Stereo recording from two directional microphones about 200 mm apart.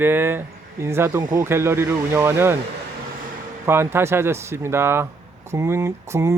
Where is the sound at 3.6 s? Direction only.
10° right (ahead or behind).